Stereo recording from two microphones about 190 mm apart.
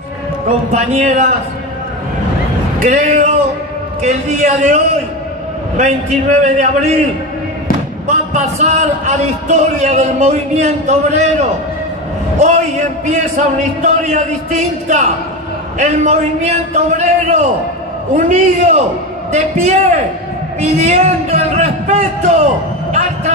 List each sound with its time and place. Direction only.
0.7 s speech: 40° right (ahead or behind)
2.8 s speech: 40° right (ahead or behind)
8.1 s speech: 40° right (ahead or behind)
22.8 s a sound: 40° right (ahead or behind)